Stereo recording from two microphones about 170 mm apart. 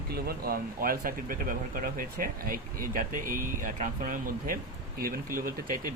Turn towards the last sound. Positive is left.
turn(degrees=-55)  # may be behind; listen again after turning